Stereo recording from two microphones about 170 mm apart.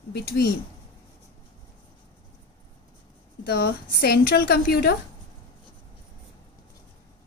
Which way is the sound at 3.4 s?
65° left (ahead or behind).